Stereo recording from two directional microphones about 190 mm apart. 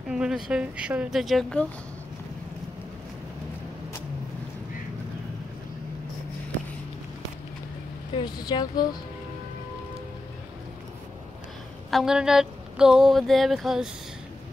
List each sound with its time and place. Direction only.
0.1 s speech: 5° right (ahead or behind)
8.2 s speech: 20° left (ahead or behind)
11.9 s speech: centre (ahead or behind)